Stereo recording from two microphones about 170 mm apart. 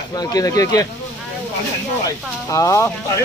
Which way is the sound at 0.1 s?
20° left (ahead or behind).